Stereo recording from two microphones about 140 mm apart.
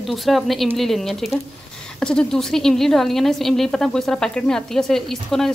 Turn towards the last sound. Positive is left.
turn(degrees=5)  # may be behind; listen again after turning